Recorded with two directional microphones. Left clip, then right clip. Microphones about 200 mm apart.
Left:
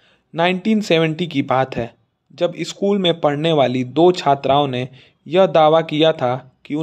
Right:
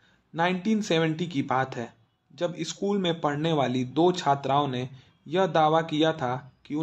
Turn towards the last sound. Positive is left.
turn(degrees=35)  # may be behind; listen again after turning